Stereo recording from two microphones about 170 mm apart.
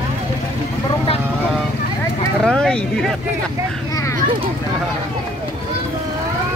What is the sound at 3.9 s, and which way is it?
Children playing, 20° left (ahead or behind).